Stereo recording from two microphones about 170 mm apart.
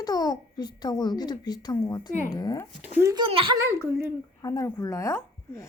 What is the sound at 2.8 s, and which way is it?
Speech, 15° right (ahead or behind).